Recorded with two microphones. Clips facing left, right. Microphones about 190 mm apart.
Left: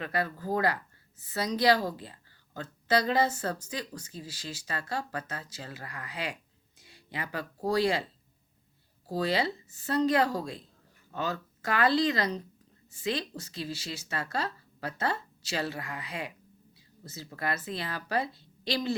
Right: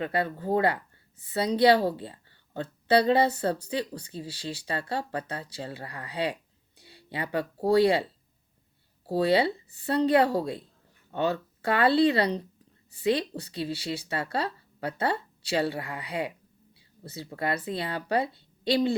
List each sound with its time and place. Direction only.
0.0 s a woman's voice: 25° right (ahead or behind)
9.0 s a woman's voice: 30° right (ahead or behind)